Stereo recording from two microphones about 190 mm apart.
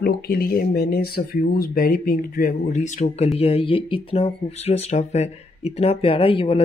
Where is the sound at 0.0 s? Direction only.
55° left (ahead or behind).